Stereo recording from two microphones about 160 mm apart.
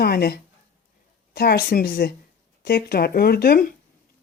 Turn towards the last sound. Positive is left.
turn(degrees=70)  # may be behind; listen again after turning